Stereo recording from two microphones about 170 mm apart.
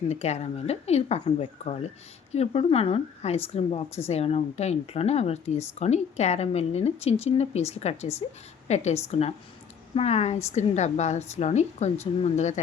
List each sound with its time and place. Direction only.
0.1 s a woman's voice: 40° left (ahead or behind)